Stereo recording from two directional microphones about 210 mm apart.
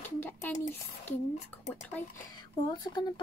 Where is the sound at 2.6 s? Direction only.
20° left (ahead or behind).